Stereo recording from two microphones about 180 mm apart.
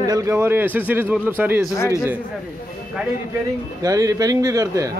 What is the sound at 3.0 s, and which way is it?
Speech, 10° right (ahead or behind).